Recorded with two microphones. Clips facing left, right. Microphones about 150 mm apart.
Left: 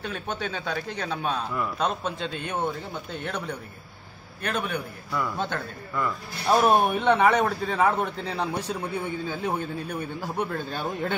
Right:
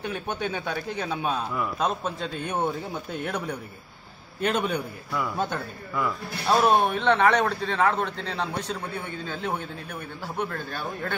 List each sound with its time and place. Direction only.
0.0 s speech: 15° right (ahead or behind)
4.4 s a man's voice: 20° right (ahead or behind)
5.4 s a man's voice: 5° right (ahead or behind)
6.4 s speech: 10° left (ahead or behind)